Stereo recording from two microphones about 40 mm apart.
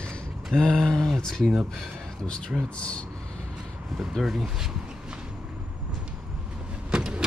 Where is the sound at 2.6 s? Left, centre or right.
Left.